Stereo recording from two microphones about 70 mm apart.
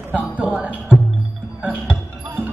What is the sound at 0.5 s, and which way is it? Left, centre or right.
Music, right.